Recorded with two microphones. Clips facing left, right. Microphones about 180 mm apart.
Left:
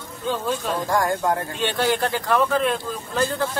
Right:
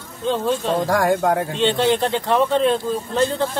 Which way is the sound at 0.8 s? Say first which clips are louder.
Right 3 dB; 75° right (ahead or behind).